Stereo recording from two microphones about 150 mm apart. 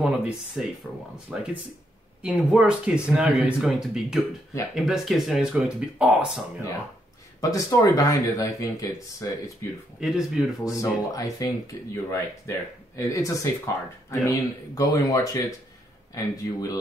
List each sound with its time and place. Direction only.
0.0 s speech: 5° right (ahead or behind)
7.3 s speech: 20° left (ahead or behind)
9.9 s speech: 5° right (ahead or behind)
10.6 s speech: 25° left (ahead or behind)